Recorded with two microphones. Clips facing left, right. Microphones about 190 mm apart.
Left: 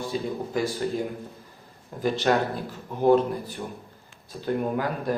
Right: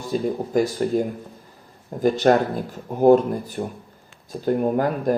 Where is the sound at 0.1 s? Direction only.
45° right (ahead or behind).